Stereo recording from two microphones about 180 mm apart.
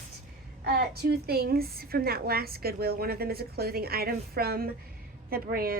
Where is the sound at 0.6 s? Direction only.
60° right (ahead or behind).